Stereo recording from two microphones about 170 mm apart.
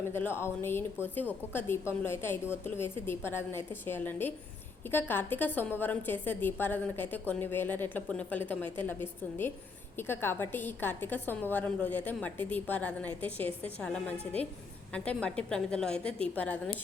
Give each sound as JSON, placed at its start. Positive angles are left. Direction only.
{"t": 0.1, "sound": "a woman's voice", "side_deg": 15}